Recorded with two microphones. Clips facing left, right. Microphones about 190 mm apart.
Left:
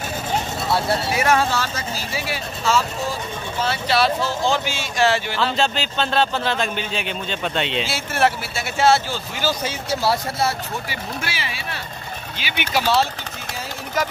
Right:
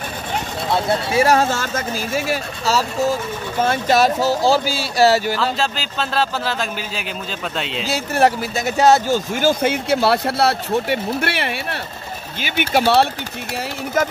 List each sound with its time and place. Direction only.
1.1 s speech: 35° right (ahead or behind)
3.5 s speech: 50° right (ahead or behind)
5.6 s speech: centre (ahead or behind)
7.8 s speech: 40° right (ahead or behind); by 11.8 s 60° right (ahead or behind)
12.4 s speech: 50° right (ahead or behind)
14.0 s speech: 50° right (ahead or behind)